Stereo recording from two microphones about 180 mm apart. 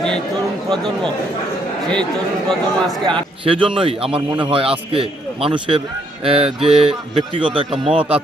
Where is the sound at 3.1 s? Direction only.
30° right (ahead or behind).